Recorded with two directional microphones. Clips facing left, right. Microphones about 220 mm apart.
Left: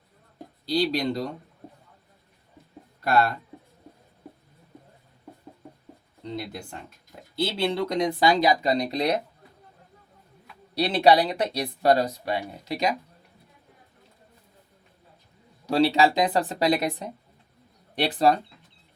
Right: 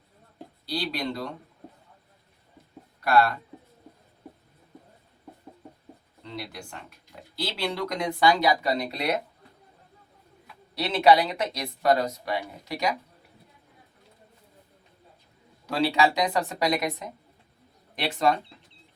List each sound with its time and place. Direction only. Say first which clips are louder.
0.7 s speech: left 6 dB; 25° left (ahead or behind)
3.0 s speech: right 1 dB; 25° left (ahead or behind)
6.2 s speech: left 4 dB; 25° left (ahead or behind)
10.8 s speech: left 1 dB; 35° left (ahead or behind)
15.7 s speech: left 3 dB; 35° left (ahead or behind)